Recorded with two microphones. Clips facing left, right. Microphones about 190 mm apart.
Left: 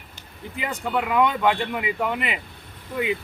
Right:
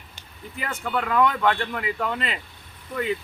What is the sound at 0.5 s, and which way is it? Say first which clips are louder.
A man's voice: left 2 dB; 15° left (ahead or behind).